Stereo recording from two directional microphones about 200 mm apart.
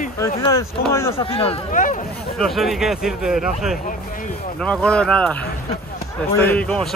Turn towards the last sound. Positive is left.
turn(degrees=5)  # may be behind; listen again after turning